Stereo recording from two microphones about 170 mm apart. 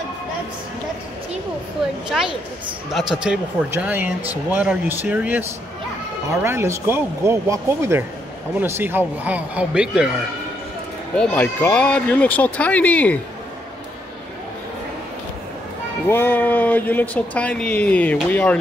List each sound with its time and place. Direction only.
2.0 s speech: 5° right (ahead or behind)
3.7 s speech: 10° right (ahead or behind)
6.4 s speech: 15° right (ahead or behind)
11.1 s speech: 5° left (ahead or behind)
16.1 s speech: 10° left (ahead or behind)